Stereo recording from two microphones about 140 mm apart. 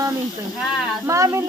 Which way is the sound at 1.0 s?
20° right (ahead or behind).